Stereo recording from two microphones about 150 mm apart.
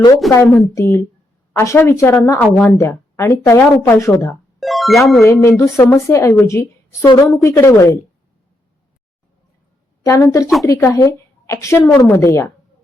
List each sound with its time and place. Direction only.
0.4 s a woman's voice: 15° left (ahead or behind)
4.6 s speech: centre (ahead or behind)
5.2 s a woman's voice: 20° left (ahead or behind)
10.1 s a woman's voice: 20° left (ahead or behind)